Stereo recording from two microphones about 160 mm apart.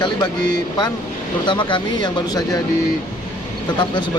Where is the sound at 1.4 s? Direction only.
30° left (ahead or behind).